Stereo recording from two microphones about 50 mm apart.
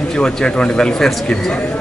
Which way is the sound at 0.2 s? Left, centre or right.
Centre.